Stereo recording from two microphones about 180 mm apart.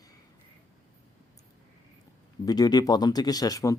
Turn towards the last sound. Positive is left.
turn(degrees=20)  # may be behind; listen again after turning